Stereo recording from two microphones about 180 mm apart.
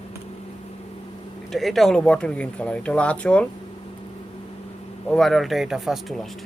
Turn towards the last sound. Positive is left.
turn(degrees=0)  # may be behind; listen again after turning